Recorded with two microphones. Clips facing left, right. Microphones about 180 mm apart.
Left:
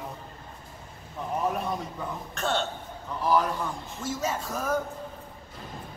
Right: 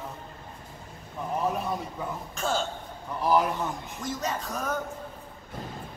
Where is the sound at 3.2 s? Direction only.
15° right (ahead or behind).